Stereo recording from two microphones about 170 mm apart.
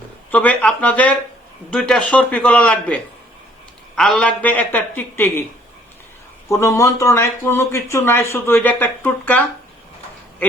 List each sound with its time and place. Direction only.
0.3 s speech: 10° left (ahead or behind)
6.5 s speech: 15° left (ahead or behind)